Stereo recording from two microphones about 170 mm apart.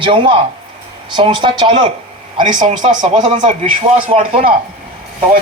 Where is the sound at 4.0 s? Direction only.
30° right (ahead or behind).